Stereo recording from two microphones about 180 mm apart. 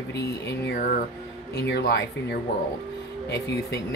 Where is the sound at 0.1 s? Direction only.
70° left (ahead or behind); by 1.0 s 50° left (ahead or behind).